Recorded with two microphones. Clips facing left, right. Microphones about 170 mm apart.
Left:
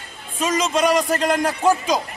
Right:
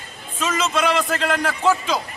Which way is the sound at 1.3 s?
15° left (ahead or behind).